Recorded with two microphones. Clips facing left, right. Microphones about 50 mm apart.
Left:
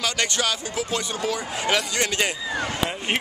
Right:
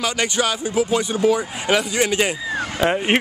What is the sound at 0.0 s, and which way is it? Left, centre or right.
Speech, centre.